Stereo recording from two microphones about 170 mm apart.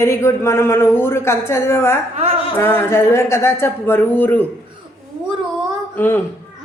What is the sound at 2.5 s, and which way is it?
Speech, 15° left (ahead or behind).